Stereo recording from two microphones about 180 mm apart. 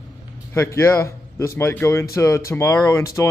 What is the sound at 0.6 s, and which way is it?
Speech, 15° left (ahead or behind).